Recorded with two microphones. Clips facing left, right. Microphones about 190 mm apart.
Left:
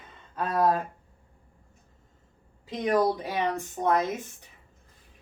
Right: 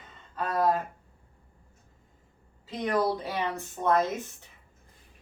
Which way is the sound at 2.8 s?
15° left (ahead or behind).